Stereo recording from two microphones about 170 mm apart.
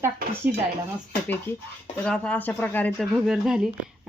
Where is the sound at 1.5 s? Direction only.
10° left (ahead or behind).